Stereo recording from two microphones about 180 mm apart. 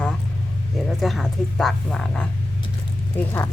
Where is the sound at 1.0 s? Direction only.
Centre (ahead or behind).